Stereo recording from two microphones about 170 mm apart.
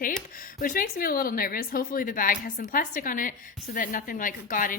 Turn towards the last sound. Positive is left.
turn(degrees=55)  # may be behind; listen again after turning